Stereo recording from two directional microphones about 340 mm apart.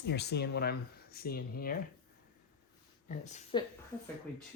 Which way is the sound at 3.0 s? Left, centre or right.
Left.